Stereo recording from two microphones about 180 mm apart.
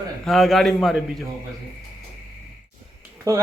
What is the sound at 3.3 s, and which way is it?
Speech, 20° right (ahead or behind).